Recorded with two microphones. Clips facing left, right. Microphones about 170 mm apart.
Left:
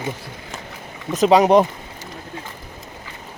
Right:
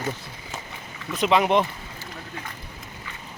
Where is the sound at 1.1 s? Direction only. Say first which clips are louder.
Left 7 dB; 40° left (ahead or behind).